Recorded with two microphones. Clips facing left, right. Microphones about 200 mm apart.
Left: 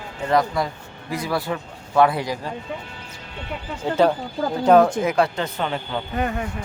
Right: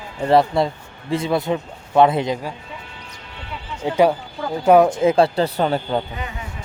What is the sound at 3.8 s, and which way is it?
Speech, 15° right (ahead or behind).